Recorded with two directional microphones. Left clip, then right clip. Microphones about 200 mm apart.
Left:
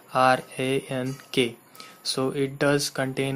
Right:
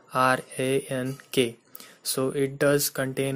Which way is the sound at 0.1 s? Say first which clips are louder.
Left 2 dB; 30° right (ahead or behind).